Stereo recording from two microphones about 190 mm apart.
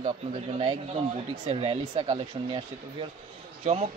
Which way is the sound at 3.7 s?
40° right (ahead or behind).